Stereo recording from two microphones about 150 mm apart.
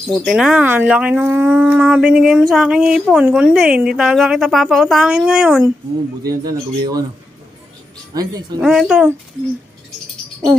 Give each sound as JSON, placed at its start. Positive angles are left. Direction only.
{"t": 0.1, "sound": "speech", "side_deg": 0}
{"t": 6.2, "sound": "speech", "side_deg": -25}
{"t": 8.1, "sound": "speech", "side_deg": -25}
{"t": 8.5, "sound": "speech", "side_deg": 0}